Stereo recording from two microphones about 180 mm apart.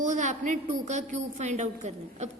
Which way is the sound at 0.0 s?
40° right (ahead or behind).